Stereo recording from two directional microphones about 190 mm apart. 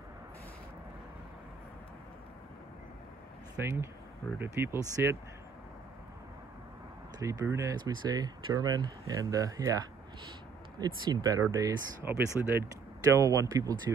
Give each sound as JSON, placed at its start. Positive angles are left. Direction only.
{"t": 3.6, "sound": "speech", "side_deg": -10}
{"t": 7.2, "sound": "speech", "side_deg": -15}
{"t": 11.1, "sound": "speech", "side_deg": -20}